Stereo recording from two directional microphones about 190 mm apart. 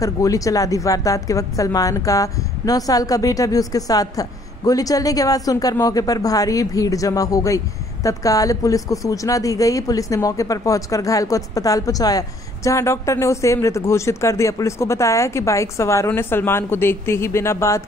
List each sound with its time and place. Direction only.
0.0 s speech: 15° left (ahead or behind)